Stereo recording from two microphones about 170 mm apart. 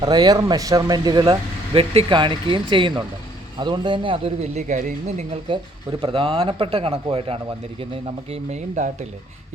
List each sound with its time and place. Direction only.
0.0 s a man's voice: 25° right (ahead or behind); by 5.2 s 45° right (ahead or behind)
6.0 s a man's voice: 35° right (ahead or behind)